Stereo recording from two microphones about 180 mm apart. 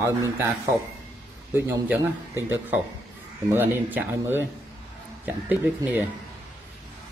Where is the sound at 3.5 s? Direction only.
10° right (ahead or behind).